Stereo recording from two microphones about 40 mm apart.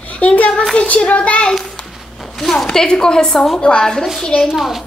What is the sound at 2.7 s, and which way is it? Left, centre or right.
Speech, centre.